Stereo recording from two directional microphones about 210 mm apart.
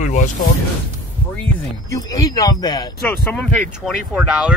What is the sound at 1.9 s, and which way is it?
Speech, 15° left (ahead or behind).